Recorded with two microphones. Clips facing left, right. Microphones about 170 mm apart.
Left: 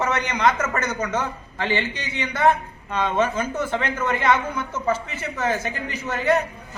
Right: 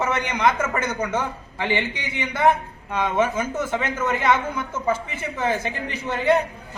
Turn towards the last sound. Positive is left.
turn(degrees=-20)  # may be behind; listen again after turning